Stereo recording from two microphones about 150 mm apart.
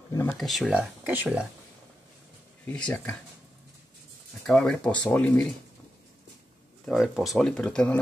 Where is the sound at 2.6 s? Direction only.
10° left (ahead or behind).